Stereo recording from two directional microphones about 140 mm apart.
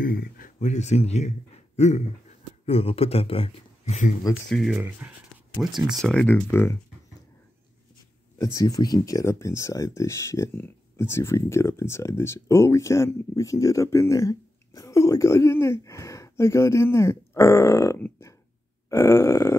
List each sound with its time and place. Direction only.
0.0 s speech: 85° left; by 2.0 s 55° left (ahead or behind)
2.6 s speech: 45° left (ahead or behind)
3.8 s speech: 55° left (ahead or behind)
4.3 s speech: centre (ahead or behind)
4.7 s speech: 10° right (ahead or behind)
5.6 s speech: centre (ahead or behind)
6.4 s speech: 20° left (ahead or behind)
8.4 s speech: 25° left (ahead or behind)
18.9 s grunt: 20° left (ahead or behind)